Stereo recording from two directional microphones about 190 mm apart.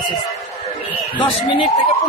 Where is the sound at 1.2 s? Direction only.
25° left (ahead or behind).